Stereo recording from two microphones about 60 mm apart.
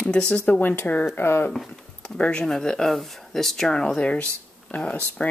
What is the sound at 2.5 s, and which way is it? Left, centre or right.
Speech, centre.